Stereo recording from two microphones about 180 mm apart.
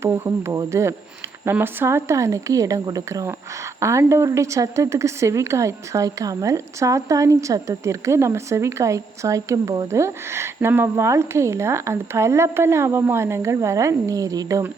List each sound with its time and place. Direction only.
0.0 s a woman's voice: 15° right (ahead or behind)